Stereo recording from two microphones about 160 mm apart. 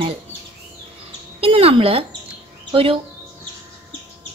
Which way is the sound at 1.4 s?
35° right (ahead or behind).